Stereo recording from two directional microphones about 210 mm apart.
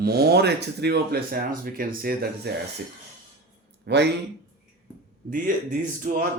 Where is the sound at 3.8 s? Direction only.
55° right (ahead or behind).